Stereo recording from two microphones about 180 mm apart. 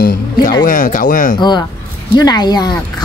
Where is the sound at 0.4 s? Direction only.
25° left (ahead or behind).